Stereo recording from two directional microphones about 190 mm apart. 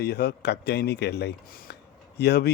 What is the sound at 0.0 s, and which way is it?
Speech, 60° left (ahead or behind).